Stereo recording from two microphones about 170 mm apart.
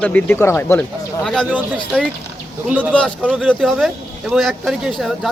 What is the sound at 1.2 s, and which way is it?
Speech, 5° left (ahead or behind).